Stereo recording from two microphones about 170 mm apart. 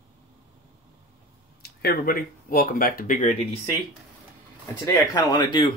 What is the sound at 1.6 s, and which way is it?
Speech, 65° left (ahead or behind).